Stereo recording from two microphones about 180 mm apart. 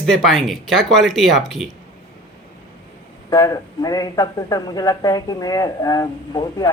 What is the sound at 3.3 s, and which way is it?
Speech, 20° left (ahead or behind).